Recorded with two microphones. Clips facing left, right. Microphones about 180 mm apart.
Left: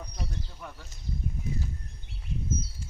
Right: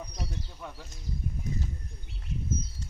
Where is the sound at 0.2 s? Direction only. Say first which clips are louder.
Left 2 dB; 5° right (ahead or behind).